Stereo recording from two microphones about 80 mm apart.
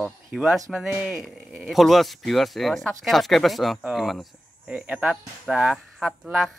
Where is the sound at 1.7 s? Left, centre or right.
Centre.